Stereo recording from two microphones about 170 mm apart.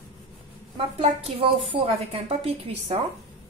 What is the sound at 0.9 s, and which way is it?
A woman's voice, 35° right (ahead or behind).